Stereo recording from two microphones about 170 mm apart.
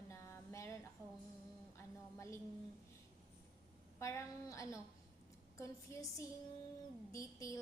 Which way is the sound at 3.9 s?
15° left (ahead or behind).